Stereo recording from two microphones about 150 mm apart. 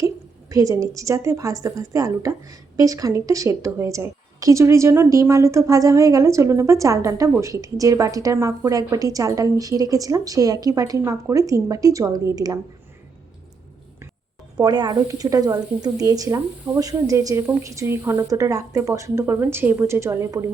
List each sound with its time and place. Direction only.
0.5 s a woman's voice: 20° right (ahead or behind)
14.6 s a woman's voice: 25° right (ahead or behind)